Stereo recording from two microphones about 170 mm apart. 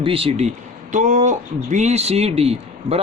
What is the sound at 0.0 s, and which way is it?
Speech, 35° right (ahead or behind).